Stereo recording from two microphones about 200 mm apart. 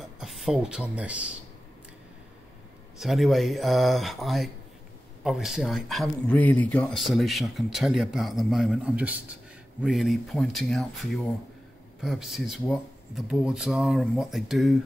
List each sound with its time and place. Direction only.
0.2 s speech: centre (ahead or behind)
3.0 s speech: centre (ahead or behind)